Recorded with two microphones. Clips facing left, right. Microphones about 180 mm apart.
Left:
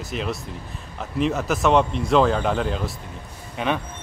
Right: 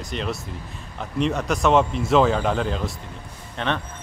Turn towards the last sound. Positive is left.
turn(degrees=10)  # may be behind; listen again after turning